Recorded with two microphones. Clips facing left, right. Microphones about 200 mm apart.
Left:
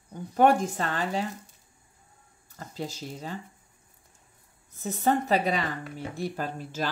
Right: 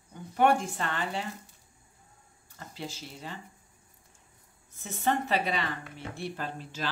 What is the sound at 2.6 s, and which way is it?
Speech, 40° left (ahead or behind).